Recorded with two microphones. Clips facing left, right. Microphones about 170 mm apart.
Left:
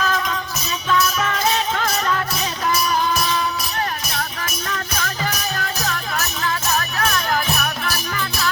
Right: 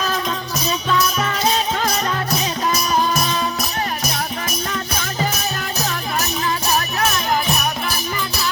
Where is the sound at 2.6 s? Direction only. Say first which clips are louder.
Even; 20° right (ahead or behind).